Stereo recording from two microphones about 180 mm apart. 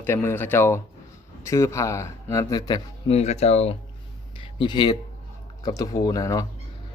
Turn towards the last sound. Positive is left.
turn(degrees=20)  # may be behind; listen again after turning